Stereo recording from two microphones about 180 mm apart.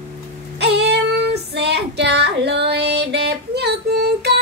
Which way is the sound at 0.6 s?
65° right (ahead or behind).